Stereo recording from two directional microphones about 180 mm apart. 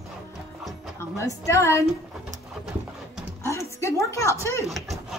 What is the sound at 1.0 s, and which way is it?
Speech, 15° left (ahead or behind).